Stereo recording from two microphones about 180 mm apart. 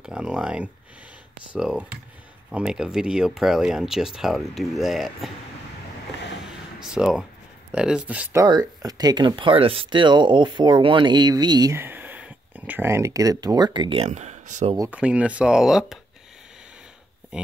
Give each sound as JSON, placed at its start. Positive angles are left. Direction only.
{"t": 0.0, "sound": "speech", "side_deg": -5}
{"t": 6.4, "sound": "a sound", "side_deg": -5}
{"t": 7.7, "sound": "speech", "side_deg": -5}
{"t": 14.8, "sound": "speech", "side_deg": -5}
{"t": 17.3, "sound": "speech", "side_deg": -5}